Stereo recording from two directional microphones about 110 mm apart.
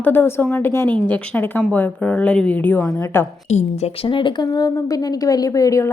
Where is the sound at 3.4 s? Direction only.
75° left (ahead or behind).